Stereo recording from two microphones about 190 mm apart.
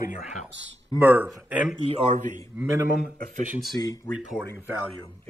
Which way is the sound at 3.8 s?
15° left (ahead or behind).